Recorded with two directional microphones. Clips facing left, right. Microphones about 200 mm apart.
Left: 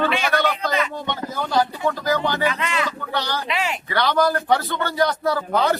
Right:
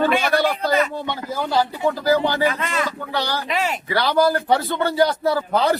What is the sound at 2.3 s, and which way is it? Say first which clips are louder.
Speech: right 2 dB; 40° right (ahead or behind).